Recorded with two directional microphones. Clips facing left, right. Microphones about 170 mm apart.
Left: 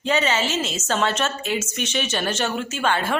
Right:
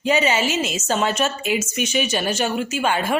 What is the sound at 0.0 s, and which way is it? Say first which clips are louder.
A woman's voice: right 3 dB; 10° right (ahead or behind).